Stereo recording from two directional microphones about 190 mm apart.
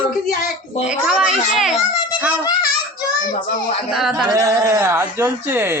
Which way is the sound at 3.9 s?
Centre (ahead or behind).